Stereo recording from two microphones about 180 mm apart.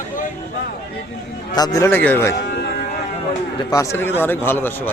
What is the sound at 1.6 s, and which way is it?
Speech, 20° left (ahead or behind).